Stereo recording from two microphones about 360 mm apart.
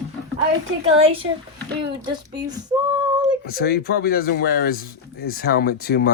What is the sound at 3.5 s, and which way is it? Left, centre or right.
Speech, left.